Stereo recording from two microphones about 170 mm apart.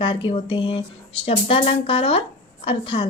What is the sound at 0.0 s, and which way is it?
A woman's voice, 30° left (ahead or behind).